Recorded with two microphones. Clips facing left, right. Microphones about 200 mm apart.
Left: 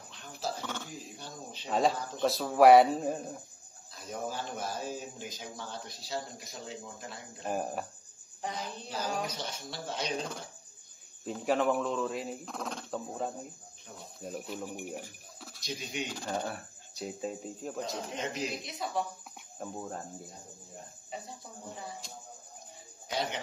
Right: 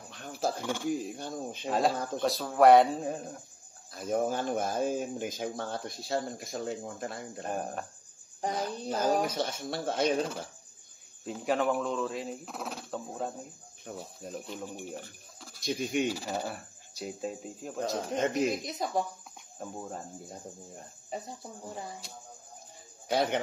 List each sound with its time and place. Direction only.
0.1 s a sound: 50° right (ahead or behind)
0.6 s speech: 10° right (ahead or behind)
1.1 s speech: 50° right (ahead or behind)
1.7 s speech: centre (ahead or behind)
3.9 s speech: 50° right (ahead or behind)
7.4 s speech: 5° left (ahead or behind)
8.4 s speech: 45° right (ahead or behind)
11.2 s speech: centre (ahead or behind)
15.6 s speech: 55° right (ahead or behind)
16.1 s speech: 5° right (ahead or behind)
18.4 s speech: 40° right (ahead or behind)
19.6 s speech: centre (ahead or behind)
23.0 s a man's voice: 55° right (ahead or behind)